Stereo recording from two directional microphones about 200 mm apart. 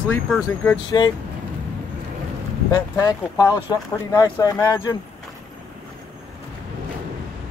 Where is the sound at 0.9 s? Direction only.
20° left (ahead or behind).